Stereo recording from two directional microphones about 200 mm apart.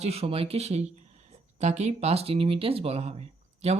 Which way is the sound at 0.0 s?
30° right (ahead or behind).